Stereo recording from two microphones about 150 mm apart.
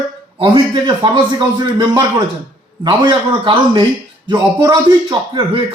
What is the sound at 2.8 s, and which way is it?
A man's voice, 30° right (ahead or behind).